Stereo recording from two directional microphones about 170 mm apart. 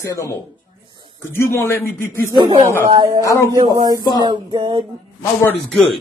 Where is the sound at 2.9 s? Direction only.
25° right (ahead or behind).